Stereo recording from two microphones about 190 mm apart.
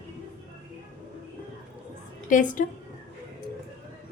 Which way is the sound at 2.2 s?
45° left (ahead or behind).